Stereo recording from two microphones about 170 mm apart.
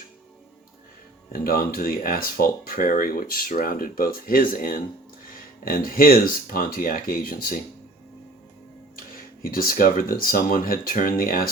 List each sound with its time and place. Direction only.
1.3 s speech: 60° left (ahead or behind)
9.4 s speech: 60° left (ahead or behind)